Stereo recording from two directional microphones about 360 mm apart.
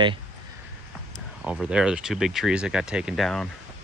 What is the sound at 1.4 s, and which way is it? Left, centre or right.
Speech, centre.